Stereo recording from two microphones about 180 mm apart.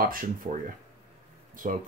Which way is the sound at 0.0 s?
50° right (ahead or behind).